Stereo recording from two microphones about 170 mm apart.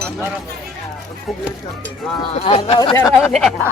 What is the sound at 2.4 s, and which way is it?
Speech, 35° left (ahead or behind).